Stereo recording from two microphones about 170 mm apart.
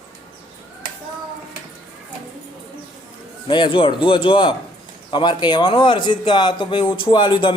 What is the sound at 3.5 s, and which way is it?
A man's voice, 30° left (ahead or behind).